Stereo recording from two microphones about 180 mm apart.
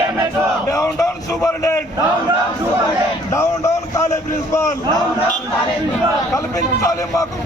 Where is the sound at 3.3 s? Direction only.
15° left (ahead or behind).